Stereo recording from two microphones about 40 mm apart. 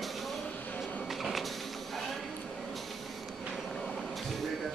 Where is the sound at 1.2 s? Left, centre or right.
Centre.